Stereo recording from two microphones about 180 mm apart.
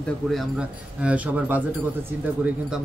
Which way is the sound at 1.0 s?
5° right (ahead or behind).